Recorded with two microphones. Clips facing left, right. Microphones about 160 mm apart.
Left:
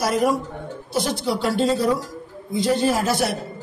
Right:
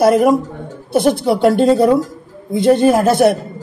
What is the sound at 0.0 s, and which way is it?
A man's voice, 55° right (ahead or behind).